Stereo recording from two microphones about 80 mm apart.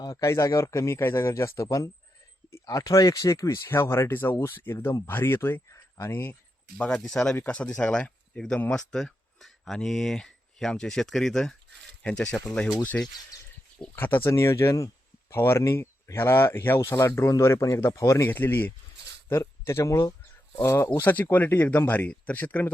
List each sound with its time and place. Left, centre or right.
0.2 s speech: left
6.7 s speech: centre; by 18.3 s left
18.3 s speech: left
20.6 s speech: left